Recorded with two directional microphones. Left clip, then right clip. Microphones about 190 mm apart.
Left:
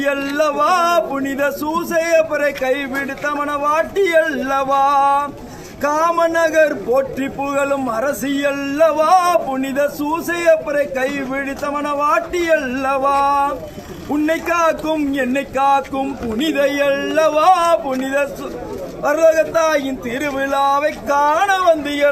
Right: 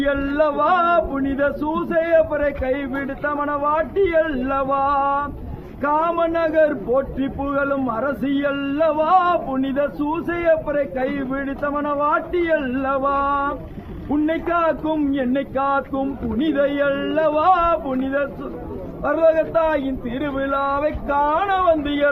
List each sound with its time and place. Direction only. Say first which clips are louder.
0.0 s speech: left 2 dB; 25° left (ahead or behind)
0.3 s speech: left 2 dB; 35° left (ahead or behind)
5.0 s speech: left 5 dB; 20° left (ahead or behind)
5.8 s speech: left 4 dB; 30° left (ahead or behind)
7.6 s speech: left 3 dB; 20° left (ahead or behind)
7.9 s speech: left 3 dB; 35° left (ahead or behind)